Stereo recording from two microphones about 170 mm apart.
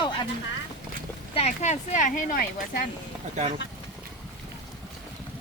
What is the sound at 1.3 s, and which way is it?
Speech, 40° left (ahead or behind).